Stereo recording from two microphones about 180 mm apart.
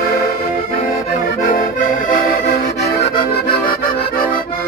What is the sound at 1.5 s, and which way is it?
Accordion, 50° left (ahead or behind).